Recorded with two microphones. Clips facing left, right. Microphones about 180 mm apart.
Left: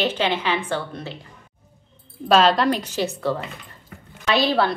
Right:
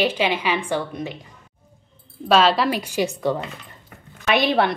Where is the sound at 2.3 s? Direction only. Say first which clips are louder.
Even; 5° right (ahead or behind); by 4.7 s 20° right (ahead or behind).